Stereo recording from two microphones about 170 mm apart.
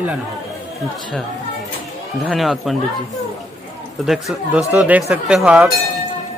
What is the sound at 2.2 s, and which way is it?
Speech, centre (ahead or behind).